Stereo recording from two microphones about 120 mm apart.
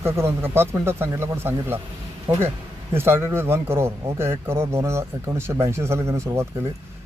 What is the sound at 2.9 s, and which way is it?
Speech, 20° right (ahead or behind).